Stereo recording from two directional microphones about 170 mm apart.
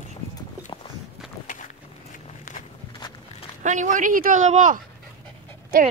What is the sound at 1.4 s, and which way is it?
Walk, 50° left (ahead or behind).